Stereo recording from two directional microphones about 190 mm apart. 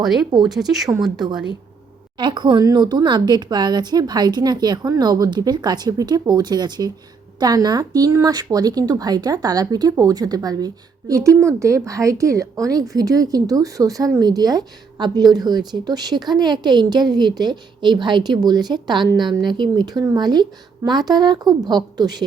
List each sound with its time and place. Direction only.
0.3 s speech: 20° right (ahead or behind)
0.9 s speech: centre (ahead or behind)
2.1 s speech: 25° right (ahead or behind)